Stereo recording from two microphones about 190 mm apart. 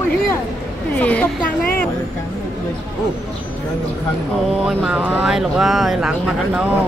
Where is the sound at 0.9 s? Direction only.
5° left (ahead or behind).